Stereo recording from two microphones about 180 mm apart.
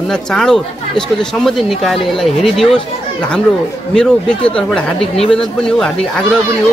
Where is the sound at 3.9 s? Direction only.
5° left (ahead or behind).